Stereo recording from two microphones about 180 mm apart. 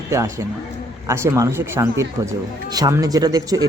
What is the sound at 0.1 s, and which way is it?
Speech, 15° right (ahead or behind).